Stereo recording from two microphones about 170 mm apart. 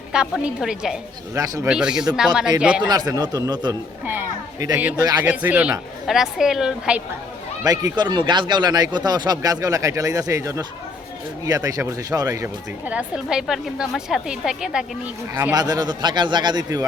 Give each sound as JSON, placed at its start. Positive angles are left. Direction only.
{"t": 0.1, "sound": "a woman's voice", "side_deg": -5}
{"t": 2.9, "sound": "speech", "side_deg": -25}
{"t": 4.0, "sound": "a woman's voice", "side_deg": -10}
{"t": 5.2, "sound": "a woman's voice", "side_deg": -10}
{"t": 7.6, "sound": "speech", "side_deg": -20}
{"t": 15.5, "sound": "speech", "side_deg": -25}